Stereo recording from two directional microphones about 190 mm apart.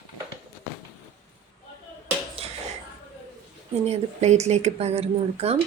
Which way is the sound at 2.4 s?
30° right (ahead or behind).